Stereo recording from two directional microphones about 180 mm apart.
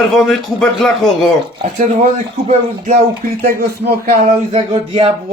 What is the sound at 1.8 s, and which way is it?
Speech, 40° right (ahead or behind).